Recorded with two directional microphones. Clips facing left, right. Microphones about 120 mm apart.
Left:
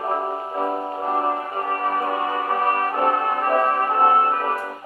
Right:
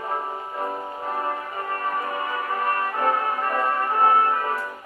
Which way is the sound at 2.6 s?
40° left (ahead or behind).